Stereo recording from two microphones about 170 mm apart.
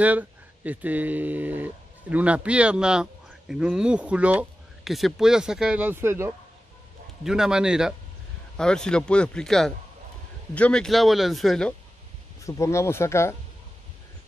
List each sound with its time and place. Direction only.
0.0 s speech: 10° right (ahead or behind)
7.2 s speech: 5° right (ahead or behind)
12.4 s speech: 15° left (ahead or behind)